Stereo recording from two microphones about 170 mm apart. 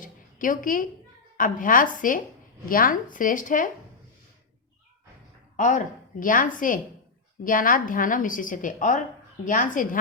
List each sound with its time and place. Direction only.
0.0 s a sound: 50° left (ahead or behind)
1.4 s a woman's voice: 50° left (ahead or behind)
5.5 s a woman's voice: 50° left (ahead or behind)